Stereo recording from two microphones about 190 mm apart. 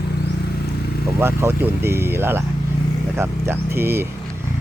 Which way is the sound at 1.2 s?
15° right (ahead or behind).